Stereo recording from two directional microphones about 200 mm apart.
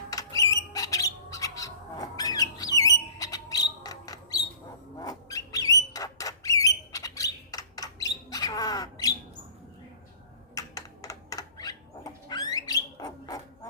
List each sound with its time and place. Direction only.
0.1 s rodents: 15° left (ahead or behind)
0.5 s a sound: 15° left (ahead or behind)
4.9 s bird: 20° left (ahead or behind)
10.5 s dog: 15° left (ahead or behind)